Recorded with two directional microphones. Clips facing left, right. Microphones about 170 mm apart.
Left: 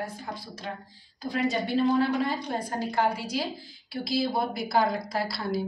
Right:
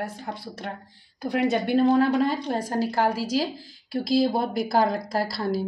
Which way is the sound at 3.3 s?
45° right (ahead or behind).